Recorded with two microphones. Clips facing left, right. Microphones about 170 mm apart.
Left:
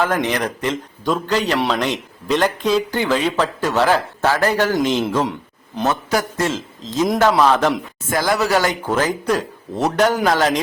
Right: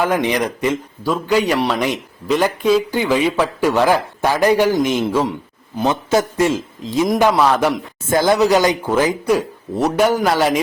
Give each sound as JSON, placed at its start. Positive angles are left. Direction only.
{"t": 0.0, "sound": "speech", "side_deg": -15}
{"t": 5.0, "sound": "speech", "side_deg": 0}
{"t": 5.8, "sound": "a man's voice", "side_deg": -20}
{"t": 8.1, "sound": "speech", "side_deg": -25}